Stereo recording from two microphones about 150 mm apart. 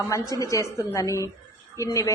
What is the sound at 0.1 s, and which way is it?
A woman's voice, 20° left (ahead or behind).